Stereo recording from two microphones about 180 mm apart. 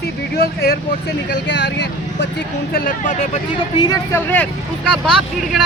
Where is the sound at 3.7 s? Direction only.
20° left (ahead or behind).